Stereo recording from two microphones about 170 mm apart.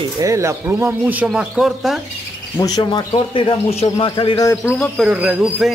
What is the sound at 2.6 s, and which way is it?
Speech, 25° left (ahead or behind).